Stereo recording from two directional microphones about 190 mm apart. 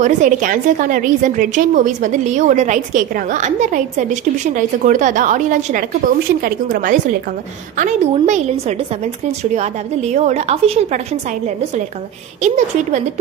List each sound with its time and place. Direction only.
0.0 s a woman's voice: 45° right (ahead or behind)
12.4 s a woman's voice: 40° right (ahead or behind)